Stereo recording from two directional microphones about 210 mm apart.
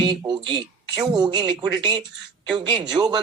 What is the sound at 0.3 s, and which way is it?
Speech, 25° right (ahead or behind).